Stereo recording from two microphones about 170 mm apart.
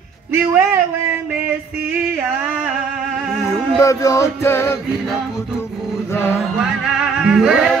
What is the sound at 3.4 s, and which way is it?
Music, 20° left (ahead or behind).